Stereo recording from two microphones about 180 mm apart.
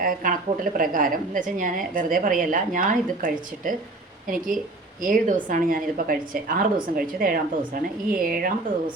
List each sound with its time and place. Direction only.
0.0 s a woman's voice: 50° right (ahead or behind)
5.0 s a woman's voice: 50° right (ahead or behind)